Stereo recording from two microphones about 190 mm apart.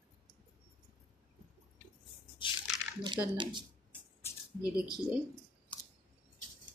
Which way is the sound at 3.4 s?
25° right (ahead or behind).